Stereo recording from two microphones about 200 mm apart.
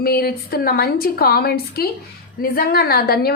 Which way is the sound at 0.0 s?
50° left (ahead or behind).